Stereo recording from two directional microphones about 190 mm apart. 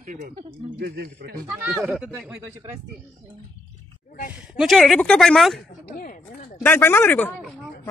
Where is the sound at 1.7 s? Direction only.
5° right (ahead or behind).